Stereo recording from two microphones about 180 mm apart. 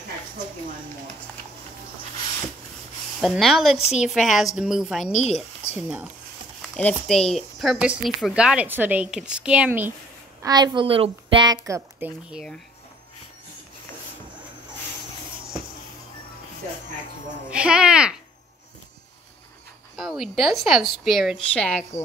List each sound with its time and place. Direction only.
3.2 s speech: centre (ahead or behind)
5.1 s speech: 40° left (ahead or behind)
5.8 s speech: 10° right (ahead or behind)
6.8 s speech: 5° left (ahead or behind)
10.4 s a woman's voice: 20° right (ahead or behind)
12.3 s speech: centre (ahead or behind)
17.5 s speech: 5° right (ahead or behind)
20.0 s speech: centre (ahead or behind)